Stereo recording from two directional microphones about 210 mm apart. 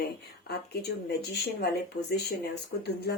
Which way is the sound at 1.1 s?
50° left (ahead or behind).